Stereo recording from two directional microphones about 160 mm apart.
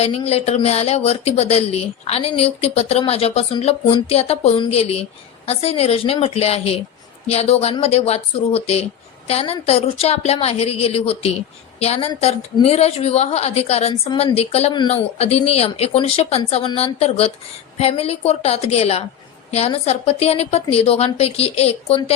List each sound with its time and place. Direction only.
0.0 s speech: 40° left (ahead or behind)